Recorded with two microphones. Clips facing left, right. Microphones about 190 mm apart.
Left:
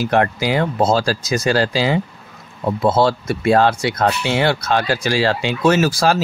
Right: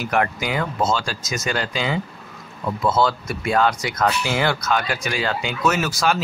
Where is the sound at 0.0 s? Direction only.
30° left (ahead or behind).